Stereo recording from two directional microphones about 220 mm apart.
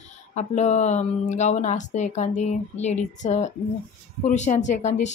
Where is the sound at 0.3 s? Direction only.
30° left (ahead or behind).